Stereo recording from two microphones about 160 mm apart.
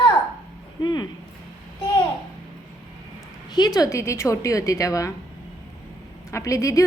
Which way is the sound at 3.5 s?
25° left (ahead or behind).